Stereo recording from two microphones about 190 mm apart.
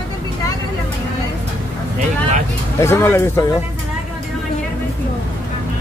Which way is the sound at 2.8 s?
15° left (ahead or behind).